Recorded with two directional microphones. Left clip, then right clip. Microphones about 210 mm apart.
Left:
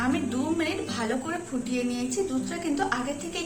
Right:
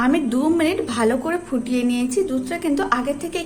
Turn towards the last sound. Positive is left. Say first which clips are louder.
# right 8 dB
turn(degrees=-50)  # may be behind; listen again after turning